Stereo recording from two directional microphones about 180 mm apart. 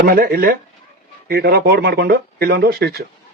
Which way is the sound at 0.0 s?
55° right (ahead or behind).